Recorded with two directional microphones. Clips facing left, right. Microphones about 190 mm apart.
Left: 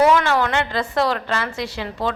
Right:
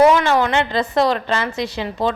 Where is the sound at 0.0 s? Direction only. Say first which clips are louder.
Right 3 dB; 20° right (ahead or behind).